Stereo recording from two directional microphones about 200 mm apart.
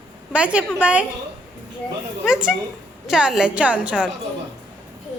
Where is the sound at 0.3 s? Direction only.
5° right (ahead or behind).